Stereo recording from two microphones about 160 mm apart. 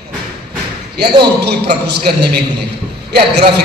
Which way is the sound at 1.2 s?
90° right.